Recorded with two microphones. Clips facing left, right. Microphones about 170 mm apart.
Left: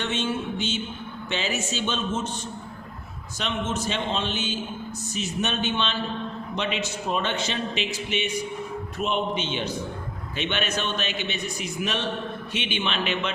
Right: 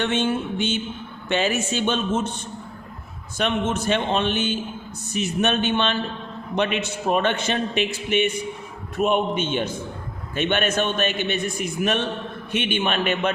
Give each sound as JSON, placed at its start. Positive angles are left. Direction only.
{"t": 0.0, "sound": "a man's voice", "side_deg": -55}
{"t": 3.3, "sound": "a man's voice", "side_deg": -55}